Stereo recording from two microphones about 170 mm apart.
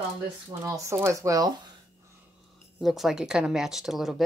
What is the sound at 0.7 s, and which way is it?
Speech, 15° right (ahead or behind).